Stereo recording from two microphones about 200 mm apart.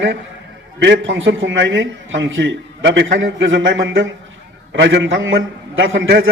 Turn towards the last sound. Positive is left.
turn(degrees=-75)  # may be behind; listen again after turning